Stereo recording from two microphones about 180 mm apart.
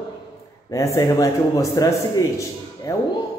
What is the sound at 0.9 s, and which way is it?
A man's voice, 20° left (ahead or behind).